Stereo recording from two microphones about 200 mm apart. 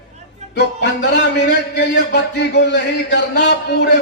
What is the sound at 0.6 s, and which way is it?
A man's voice, 55° left (ahead or behind).